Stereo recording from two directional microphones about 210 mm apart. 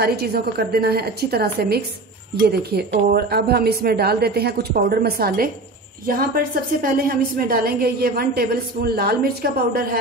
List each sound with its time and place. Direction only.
0.0 s a woman's voice: 50° right (ahead or behind)